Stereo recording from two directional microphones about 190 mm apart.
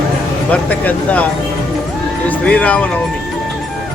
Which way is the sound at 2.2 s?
5° left (ahead or behind).